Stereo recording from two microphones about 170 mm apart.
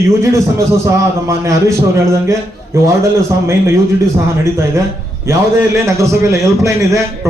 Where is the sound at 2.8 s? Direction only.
15° right (ahead or behind).